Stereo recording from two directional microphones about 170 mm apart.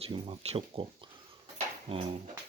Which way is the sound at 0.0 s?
35° right (ahead or behind).